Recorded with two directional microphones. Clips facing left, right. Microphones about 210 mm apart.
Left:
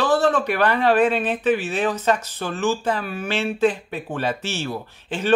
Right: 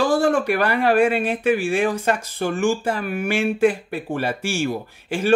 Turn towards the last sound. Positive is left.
turn(degrees=-10)  # may be behind; listen again after turning